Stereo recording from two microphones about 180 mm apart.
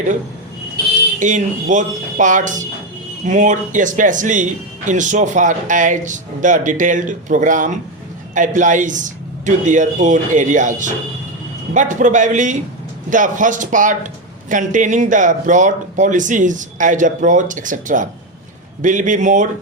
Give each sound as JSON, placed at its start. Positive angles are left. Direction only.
{"t": 1.2, "sound": "speech", "side_deg": -45}